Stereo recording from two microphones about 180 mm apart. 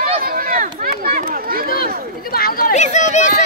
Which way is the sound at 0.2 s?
55° right (ahead or behind).